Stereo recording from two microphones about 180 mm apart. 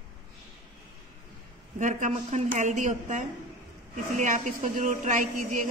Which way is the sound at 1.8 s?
40° right (ahead or behind).